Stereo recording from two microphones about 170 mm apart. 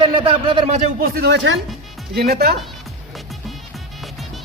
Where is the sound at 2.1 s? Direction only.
70° right (ahead or behind).